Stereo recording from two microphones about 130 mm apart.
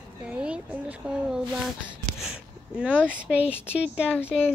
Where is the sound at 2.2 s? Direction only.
5° right (ahead or behind).